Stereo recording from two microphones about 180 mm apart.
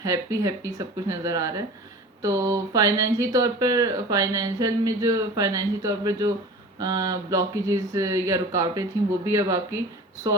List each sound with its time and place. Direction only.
0.0 s speech: 20° right (ahead or behind)